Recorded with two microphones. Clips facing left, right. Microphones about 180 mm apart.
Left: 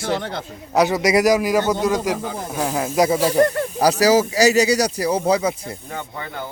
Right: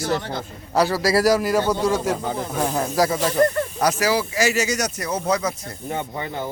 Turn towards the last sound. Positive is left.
turn(degrees=-20)  # may be behind; listen again after turning